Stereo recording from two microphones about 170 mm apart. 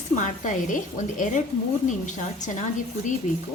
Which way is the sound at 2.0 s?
45° left (ahead or behind).